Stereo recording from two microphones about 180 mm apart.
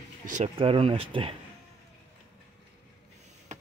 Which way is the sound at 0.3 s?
35° right (ahead or behind).